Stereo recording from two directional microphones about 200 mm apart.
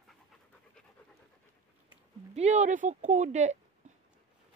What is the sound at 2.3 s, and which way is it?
Speech, 35° right (ahead or behind).